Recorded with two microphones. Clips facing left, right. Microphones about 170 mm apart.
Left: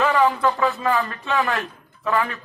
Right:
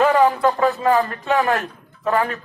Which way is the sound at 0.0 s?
40° right (ahead or behind).